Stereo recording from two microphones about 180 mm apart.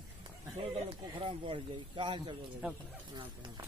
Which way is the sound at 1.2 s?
30° right (ahead or behind).